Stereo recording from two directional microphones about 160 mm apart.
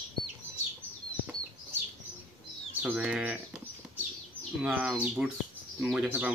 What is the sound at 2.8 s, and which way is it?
Speech, 10° right (ahead or behind).